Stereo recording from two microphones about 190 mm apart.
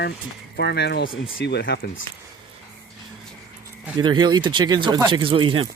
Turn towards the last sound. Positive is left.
turn(degrees=-25)  # may be behind; listen again after turning